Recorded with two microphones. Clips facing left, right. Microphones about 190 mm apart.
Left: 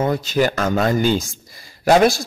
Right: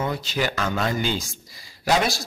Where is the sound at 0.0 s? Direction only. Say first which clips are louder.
Left 7 dB; 45° left (ahead or behind).